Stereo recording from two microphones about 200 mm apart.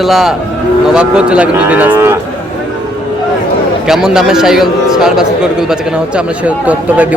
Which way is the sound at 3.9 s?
Centre (ahead or behind).